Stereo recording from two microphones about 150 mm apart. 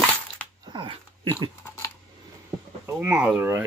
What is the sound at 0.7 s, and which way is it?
Dog, 35° right (ahead or behind).